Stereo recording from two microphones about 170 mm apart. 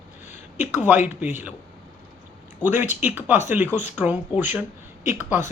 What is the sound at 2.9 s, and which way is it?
Speech, 10° right (ahead or behind).